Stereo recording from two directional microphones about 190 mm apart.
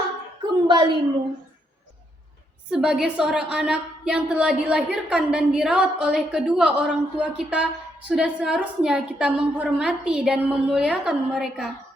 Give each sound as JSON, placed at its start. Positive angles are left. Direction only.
{"t": 0.7, "sound": "a woman's voice", "side_deg": -25}
{"t": 2.6, "sound": "a woman's voice", "side_deg": -5}